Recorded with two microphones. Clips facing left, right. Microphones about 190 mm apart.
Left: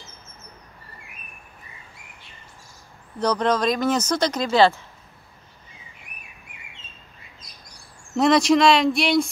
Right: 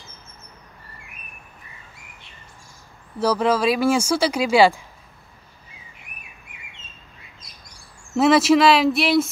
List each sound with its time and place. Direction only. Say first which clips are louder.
3.2 s speech: right 2 dB; 5° right (ahead or behind)
8.1 s speech: right 2 dB; 5° right (ahead or behind)